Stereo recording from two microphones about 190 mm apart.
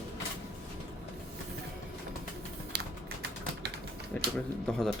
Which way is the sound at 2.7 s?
60° right (ahead or behind).